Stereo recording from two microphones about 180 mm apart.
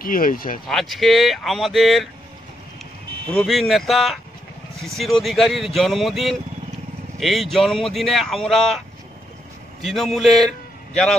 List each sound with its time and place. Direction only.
0.0 s speech: 50° left (ahead or behind)
0.7 s speech: centre (ahead or behind)
3.3 s a man's voice: centre (ahead or behind)